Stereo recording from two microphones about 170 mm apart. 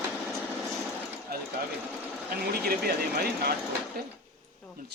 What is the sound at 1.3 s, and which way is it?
Speech, 65° right (ahead or behind).